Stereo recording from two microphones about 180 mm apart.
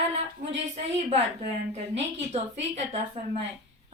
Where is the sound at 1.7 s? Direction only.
35° right (ahead or behind).